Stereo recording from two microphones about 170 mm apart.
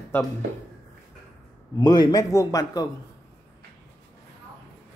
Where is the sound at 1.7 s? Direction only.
20° left (ahead or behind).